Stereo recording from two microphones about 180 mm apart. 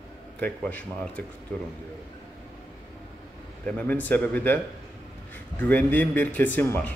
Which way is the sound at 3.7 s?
10° left (ahead or behind).